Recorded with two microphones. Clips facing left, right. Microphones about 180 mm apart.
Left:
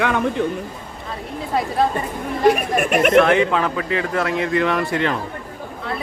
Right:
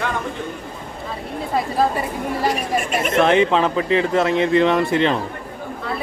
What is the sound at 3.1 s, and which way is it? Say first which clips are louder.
A man's voice: right 2 dB; 20° right (ahead or behind).